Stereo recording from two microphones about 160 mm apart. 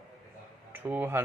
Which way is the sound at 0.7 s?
10° right (ahead or behind).